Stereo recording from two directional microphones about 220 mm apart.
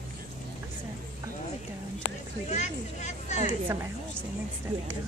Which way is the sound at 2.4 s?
30° left (ahead or behind).